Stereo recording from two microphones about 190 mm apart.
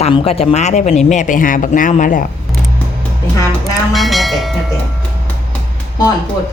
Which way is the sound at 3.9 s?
Centre (ahead or behind).